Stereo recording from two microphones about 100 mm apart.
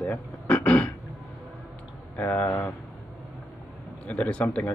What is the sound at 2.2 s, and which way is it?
Speech, 15° left (ahead or behind).